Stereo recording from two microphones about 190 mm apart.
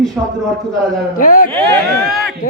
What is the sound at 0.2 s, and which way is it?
Speech, 5° right (ahead or behind).